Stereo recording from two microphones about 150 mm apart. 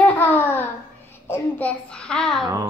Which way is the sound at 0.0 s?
10° left (ahead or behind).